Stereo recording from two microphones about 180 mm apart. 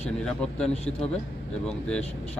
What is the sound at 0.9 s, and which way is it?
Speech, 35° left (ahead or behind).